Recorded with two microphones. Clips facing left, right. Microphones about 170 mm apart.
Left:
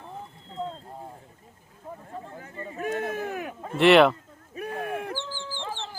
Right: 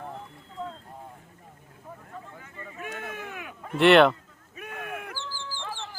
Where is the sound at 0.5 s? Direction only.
25° left (ahead or behind).